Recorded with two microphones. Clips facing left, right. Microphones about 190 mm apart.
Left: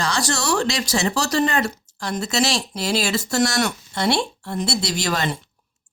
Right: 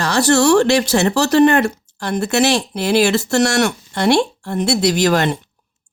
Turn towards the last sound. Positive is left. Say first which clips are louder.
# right 9 dB
turn(degrees=-65)  # may be behind; listen again after turning